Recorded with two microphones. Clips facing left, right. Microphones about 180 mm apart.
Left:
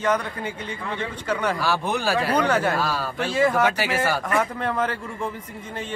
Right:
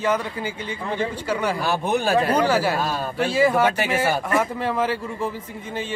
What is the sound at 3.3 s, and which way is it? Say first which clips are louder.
Speech: right 1 dB; 10° right (ahead or behind).